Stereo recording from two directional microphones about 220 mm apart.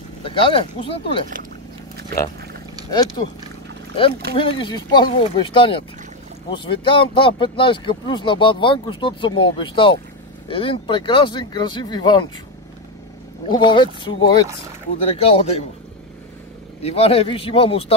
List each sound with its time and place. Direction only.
0.2 s speech: 25° left (ahead or behind)
2.9 s speech: 20° left (ahead or behind)
4.4 s speech: 25° left (ahead or behind)
13.5 s speech: 20° left (ahead or behind)
16.8 s speech: 25° left (ahead or behind)